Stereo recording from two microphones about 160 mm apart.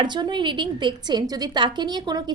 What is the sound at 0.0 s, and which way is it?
A woman's voice, 30° right (ahead or behind).